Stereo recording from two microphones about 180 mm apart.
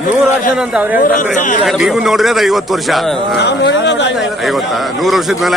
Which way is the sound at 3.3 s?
65° left (ahead or behind).